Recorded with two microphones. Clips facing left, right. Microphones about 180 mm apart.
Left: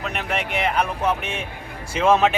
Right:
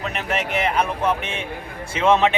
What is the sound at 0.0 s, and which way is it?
Speech, centre (ahead or behind).